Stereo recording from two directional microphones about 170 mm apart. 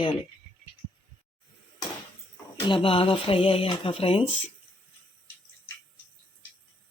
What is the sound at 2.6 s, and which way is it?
Speech, 30° left (ahead or behind).